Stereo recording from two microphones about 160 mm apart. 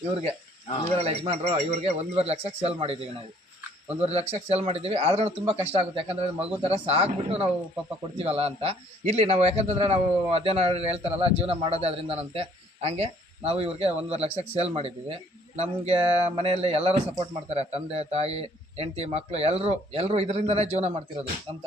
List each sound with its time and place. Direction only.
0.9 s a man's voice: 40° right (ahead or behind)
4.0 s a man's voice: 40° right (ahead or behind)